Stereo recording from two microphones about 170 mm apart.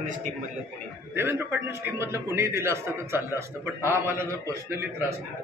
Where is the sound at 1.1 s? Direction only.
15° right (ahead or behind).